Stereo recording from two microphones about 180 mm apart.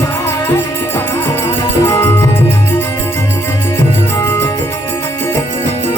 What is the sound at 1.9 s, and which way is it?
Music, 15° left (ahead or behind).